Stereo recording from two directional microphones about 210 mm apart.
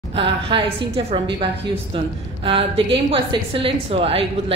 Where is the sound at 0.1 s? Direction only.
25° right (ahead or behind).